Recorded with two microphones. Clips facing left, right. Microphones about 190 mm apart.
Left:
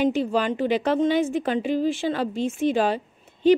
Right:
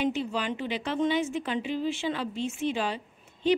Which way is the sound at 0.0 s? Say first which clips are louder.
Left 7 dB; 45° left (ahead or behind).